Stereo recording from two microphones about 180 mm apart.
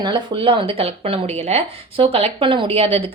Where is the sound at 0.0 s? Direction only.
30° right (ahead or behind).